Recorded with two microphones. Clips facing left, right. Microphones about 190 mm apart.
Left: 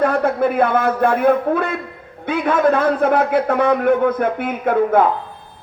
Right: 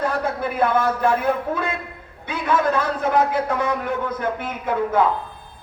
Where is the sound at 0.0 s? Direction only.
55° left (ahead or behind).